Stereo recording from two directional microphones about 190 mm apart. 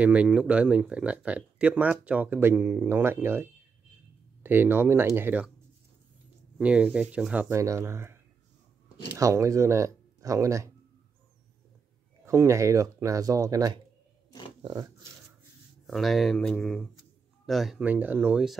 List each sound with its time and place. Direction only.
0.0 s speech: 5° right (ahead or behind)
6.6 s speech: 5° right (ahead or behind)
9.2 s speech: 15° right (ahead or behind)
12.3 s speech: 15° right (ahead or behind)
15.9 s speech: centre (ahead or behind)